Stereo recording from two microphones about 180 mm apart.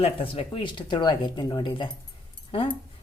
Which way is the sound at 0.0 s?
30° left (ahead or behind).